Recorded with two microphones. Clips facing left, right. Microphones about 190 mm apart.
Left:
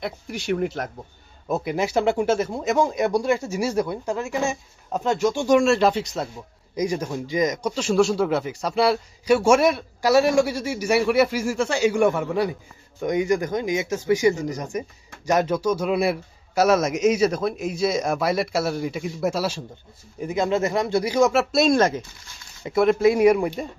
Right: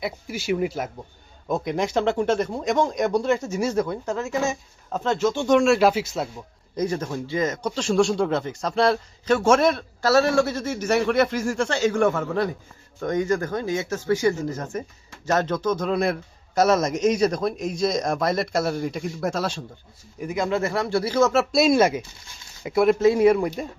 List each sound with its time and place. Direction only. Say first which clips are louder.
0.0 s a man's voice: even; 5° right (ahead or behind)
5.6 s speech: right 1 dB; 5° right (ahead or behind)
6.7 s a man's voice: left 1 dB; 10° left (ahead or behind)
20.2 s speech: left 2 dB; 25° left (ahead or behind)
21.5 s speech: even; centre (ahead or behind)
23.0 s a man's voice: even; 15° left (ahead or behind)